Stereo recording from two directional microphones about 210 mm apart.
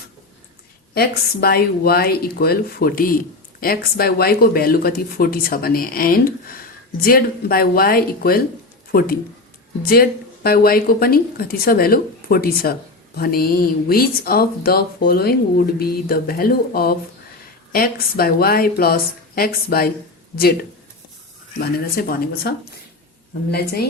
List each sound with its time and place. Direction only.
0.9 s speech: 50° left (ahead or behind)